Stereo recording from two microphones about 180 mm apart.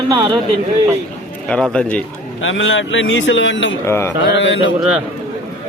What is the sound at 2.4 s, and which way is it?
Speech, 90° left.